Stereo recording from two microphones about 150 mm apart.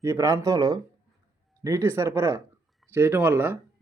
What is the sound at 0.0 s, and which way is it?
Speech, 20° right (ahead or behind).